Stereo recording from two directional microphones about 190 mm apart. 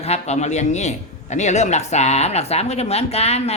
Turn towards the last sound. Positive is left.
turn(degrees=35)  # may be behind; listen again after turning